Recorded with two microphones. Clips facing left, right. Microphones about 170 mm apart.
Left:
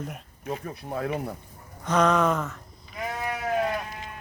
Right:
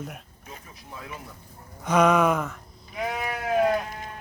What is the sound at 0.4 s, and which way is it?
Speech, 55° left (ahead or behind).